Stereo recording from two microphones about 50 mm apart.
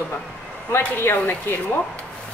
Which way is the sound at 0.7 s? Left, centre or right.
Left.